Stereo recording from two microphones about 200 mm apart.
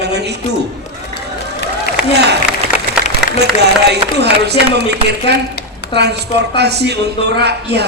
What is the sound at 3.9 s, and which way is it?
A man's voice, 55° right (ahead or behind).